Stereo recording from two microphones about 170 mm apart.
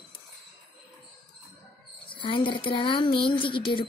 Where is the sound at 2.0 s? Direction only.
30° left (ahead or behind).